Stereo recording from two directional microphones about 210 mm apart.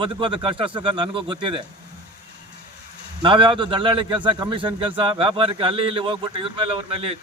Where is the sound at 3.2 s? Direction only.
25° right (ahead or behind).